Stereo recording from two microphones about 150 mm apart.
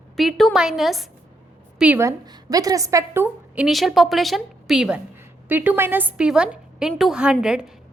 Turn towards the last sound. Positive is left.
turn(degrees=-5)  # may be behind; listen again after turning